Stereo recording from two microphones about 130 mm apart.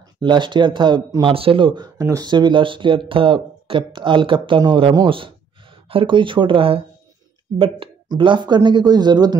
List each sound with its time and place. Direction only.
0.2 s speech: 35° right (ahead or behind)
2.0 s speech: 25° right (ahead or behind)